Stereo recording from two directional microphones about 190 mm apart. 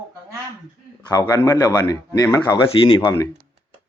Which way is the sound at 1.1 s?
20° left (ahead or behind).